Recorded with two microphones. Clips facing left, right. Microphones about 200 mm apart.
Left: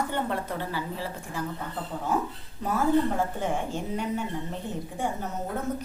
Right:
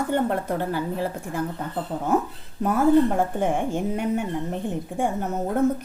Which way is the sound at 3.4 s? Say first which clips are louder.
Right 6 dB; 55° right (ahead or behind).